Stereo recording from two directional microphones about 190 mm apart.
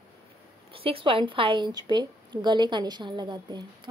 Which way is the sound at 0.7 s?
30° right (ahead or behind).